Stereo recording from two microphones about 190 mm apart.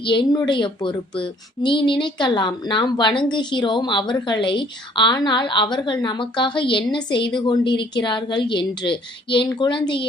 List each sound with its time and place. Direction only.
0.0 s speech: 25° left (ahead or behind)